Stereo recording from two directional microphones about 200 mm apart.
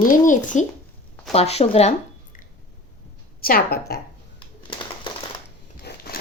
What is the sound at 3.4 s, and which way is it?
Speech, 50° left (ahead or behind).